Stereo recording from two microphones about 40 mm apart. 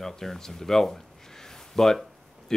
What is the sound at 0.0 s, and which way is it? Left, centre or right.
Speech, centre.